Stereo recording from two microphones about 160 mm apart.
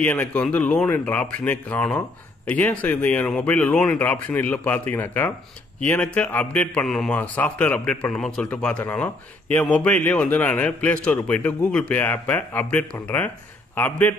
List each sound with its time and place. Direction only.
0.0 s a man's voice: 10° left (ahead or behind)